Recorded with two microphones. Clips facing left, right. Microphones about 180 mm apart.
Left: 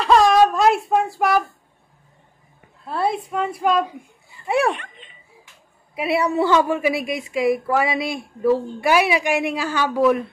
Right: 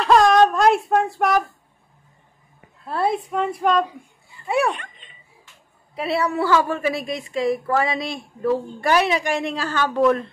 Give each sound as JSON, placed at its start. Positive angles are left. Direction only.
{"t": 0.0, "sound": "child singing", "side_deg": 0}
{"t": 2.9, "sound": "a woman's voice", "side_deg": 0}
{"t": 5.9, "sound": "a woman's voice", "side_deg": 15}